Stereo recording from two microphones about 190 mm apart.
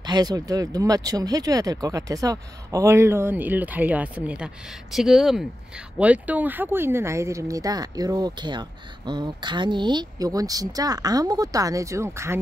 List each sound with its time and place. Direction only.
0.0 s speech: 20° right (ahead or behind)